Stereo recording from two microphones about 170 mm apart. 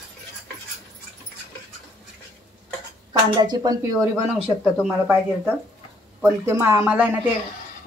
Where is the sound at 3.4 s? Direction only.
25° right (ahead or behind).